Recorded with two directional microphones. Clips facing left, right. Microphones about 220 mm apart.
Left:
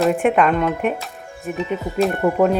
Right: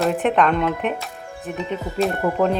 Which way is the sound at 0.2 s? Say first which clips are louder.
Left 2 dB; 10° left (ahead or behind).